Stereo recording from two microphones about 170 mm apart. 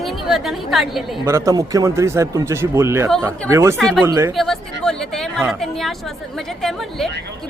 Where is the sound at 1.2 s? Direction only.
15° right (ahead or behind).